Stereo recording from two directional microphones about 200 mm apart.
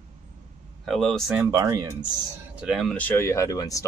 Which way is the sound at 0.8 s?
Centre (ahead or behind).